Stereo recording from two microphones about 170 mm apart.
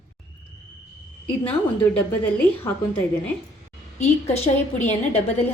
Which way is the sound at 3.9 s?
40° left (ahead or behind).